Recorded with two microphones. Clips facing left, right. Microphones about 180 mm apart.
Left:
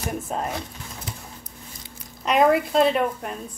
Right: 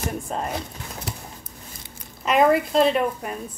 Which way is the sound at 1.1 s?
70° right (ahead or behind).